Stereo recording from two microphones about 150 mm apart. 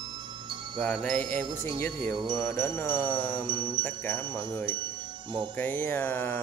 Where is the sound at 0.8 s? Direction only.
5° left (ahead or behind).